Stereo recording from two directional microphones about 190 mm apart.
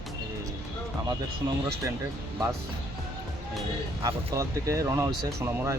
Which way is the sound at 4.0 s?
15° right (ahead or behind).